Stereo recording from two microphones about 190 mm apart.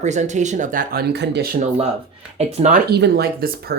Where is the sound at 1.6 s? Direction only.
35° right (ahead or behind).